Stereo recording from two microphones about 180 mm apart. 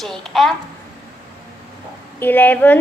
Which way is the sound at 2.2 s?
10° left (ahead or behind).